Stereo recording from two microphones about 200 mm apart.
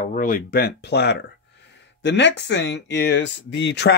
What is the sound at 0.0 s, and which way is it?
Speech, 40° left (ahead or behind).